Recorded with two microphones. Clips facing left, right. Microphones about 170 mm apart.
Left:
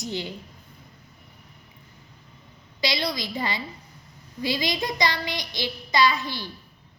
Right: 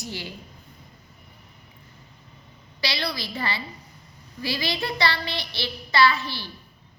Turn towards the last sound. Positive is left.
turn(degrees=15)  # may be behind; listen again after turning